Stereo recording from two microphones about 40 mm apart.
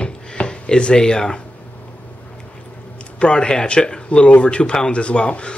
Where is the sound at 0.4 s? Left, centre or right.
Left.